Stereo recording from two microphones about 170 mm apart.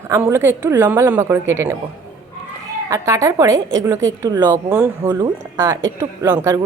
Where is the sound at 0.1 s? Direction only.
15° right (ahead or behind).